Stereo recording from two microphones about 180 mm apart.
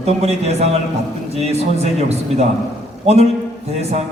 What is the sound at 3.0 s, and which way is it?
Speech, 35° right (ahead or behind).